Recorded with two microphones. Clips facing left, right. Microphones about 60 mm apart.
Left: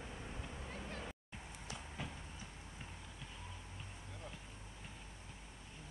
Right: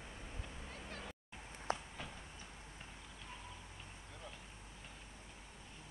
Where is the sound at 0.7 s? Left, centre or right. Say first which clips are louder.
Left 2 dB; centre.